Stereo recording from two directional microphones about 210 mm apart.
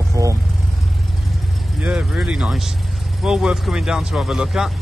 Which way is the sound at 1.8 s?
5° right (ahead or behind).